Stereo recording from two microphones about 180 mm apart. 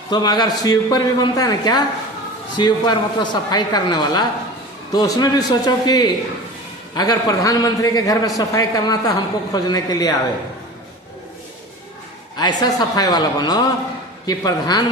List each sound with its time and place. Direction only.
0.1 s a man's voice: 25° left (ahead or behind)
12.4 s a man's voice: 20° left (ahead or behind)